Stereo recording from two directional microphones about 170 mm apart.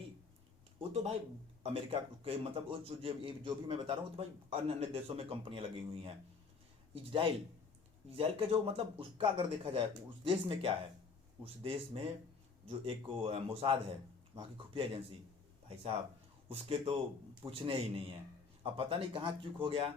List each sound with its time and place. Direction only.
0.8 s a man's voice: 35° right (ahead or behind)
16.5 s a man's voice: 35° right (ahead or behind)